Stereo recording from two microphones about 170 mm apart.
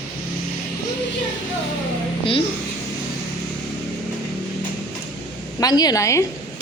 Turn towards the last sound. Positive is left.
turn(degrees=20)  # may be behind; listen again after turning